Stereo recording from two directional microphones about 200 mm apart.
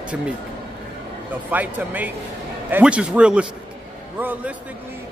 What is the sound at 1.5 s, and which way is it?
A man's voice, 10° right (ahead or behind).